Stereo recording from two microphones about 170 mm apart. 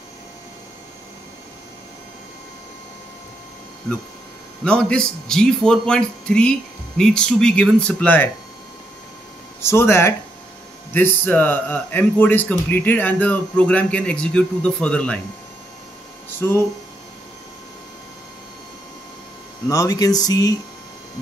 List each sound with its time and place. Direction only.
4.6 s speech: 5° left (ahead or behind)
9.6 s a man's voice: 15° left (ahead or behind)
16.3 s speech: 15° left (ahead or behind)
19.7 s speech: 20° left (ahead or behind)